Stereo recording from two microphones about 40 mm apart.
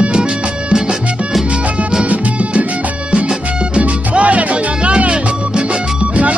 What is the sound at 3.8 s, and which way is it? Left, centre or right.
Music, right.